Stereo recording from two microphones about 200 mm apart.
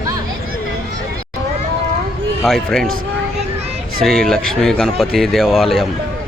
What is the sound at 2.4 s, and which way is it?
Speech, centre (ahead or behind).